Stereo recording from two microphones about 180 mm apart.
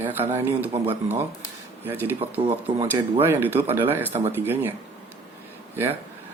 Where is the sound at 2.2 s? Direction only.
35° right (ahead or behind).